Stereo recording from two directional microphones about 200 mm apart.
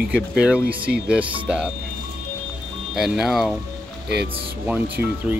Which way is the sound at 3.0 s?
Centre (ahead or behind).